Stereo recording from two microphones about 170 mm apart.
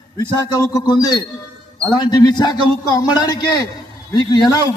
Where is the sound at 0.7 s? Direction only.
20° left (ahead or behind).